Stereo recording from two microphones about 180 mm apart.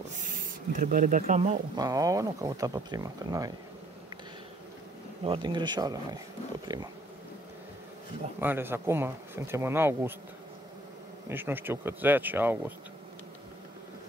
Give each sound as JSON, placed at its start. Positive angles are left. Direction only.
{"t": 0.2, "sound": "speech", "side_deg": -50}
{"t": 1.8, "sound": "speech", "side_deg": -20}
{"t": 5.2, "sound": "speech", "side_deg": -25}
{"t": 8.4, "sound": "speech", "side_deg": -10}
{"t": 11.2, "sound": "speech", "side_deg": -10}